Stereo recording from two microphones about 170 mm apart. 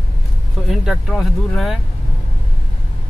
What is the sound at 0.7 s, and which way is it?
Speech, centre (ahead or behind).